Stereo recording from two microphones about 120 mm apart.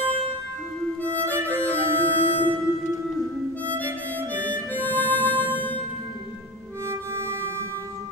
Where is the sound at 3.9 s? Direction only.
15° left (ahead or behind).